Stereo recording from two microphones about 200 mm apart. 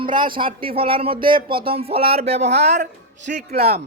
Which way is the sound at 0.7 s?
30° right (ahead or behind).